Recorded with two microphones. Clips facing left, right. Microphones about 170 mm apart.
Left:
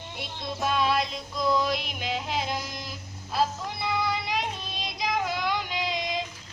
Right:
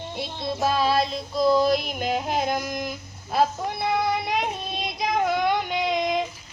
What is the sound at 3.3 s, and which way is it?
Child singing, 55° right (ahead or behind).